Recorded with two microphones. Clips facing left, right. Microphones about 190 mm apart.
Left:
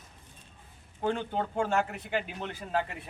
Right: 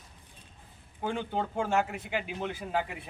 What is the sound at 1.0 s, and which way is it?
A man's voice, 10° right (ahead or behind).